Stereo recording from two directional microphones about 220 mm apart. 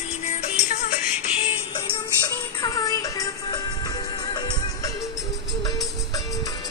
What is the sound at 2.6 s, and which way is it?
Music, 15° left (ahead or behind).